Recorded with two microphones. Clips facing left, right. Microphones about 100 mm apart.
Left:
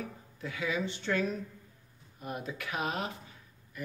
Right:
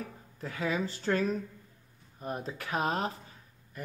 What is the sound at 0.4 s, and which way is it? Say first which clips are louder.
Speech: right 2 dB; 40° right (ahead or behind).